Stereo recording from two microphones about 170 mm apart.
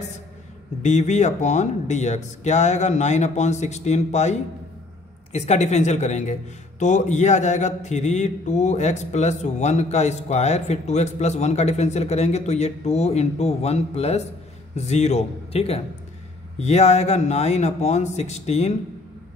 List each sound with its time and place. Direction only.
0.8 s speech: 45° left (ahead or behind)